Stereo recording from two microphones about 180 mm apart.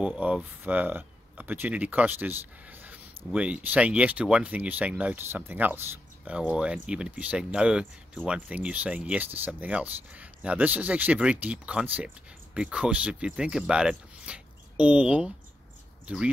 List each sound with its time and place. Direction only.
0.0 s speech: 5° right (ahead or behind)